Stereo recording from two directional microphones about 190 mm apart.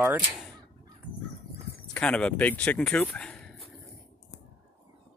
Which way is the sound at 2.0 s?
5° left (ahead or behind).